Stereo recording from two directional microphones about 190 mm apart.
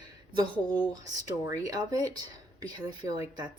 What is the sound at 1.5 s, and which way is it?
Speech, 20° right (ahead or behind).